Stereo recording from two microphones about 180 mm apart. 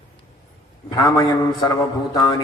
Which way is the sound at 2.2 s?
25° left (ahead or behind).